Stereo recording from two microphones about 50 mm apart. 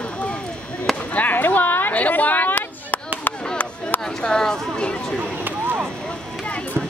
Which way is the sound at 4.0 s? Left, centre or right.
Centre.